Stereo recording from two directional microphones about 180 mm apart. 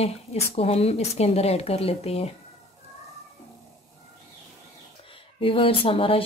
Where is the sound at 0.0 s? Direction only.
35° left (ahead or behind).